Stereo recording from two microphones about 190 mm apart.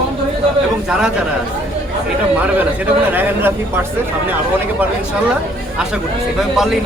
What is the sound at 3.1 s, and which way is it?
Speech, 10° right (ahead or behind).